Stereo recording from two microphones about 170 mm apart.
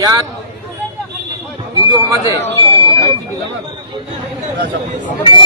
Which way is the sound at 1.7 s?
25° right (ahead or behind).